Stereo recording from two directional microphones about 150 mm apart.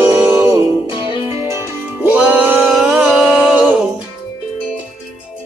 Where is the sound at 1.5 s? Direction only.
10° right (ahead or behind).